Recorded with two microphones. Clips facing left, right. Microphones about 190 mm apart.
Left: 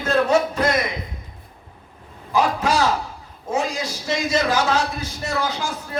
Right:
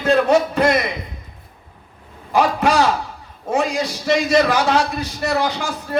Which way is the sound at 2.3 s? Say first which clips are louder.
Right 3 dB; 65° right (ahead or behind).